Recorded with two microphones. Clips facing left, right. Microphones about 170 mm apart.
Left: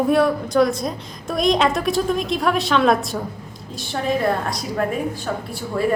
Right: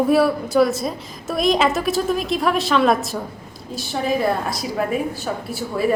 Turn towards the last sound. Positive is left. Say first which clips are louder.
# even
turn(degrees=-10)  # may be behind; listen again after turning